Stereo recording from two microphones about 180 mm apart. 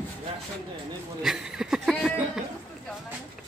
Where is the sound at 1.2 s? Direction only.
Centre (ahead or behind).